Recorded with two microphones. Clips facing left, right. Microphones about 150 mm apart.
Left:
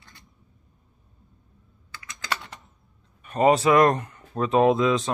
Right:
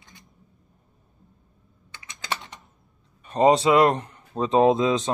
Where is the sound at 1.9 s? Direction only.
20° right (ahead or behind).